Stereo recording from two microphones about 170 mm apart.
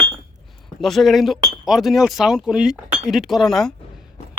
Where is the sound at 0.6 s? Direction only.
Centre (ahead or behind).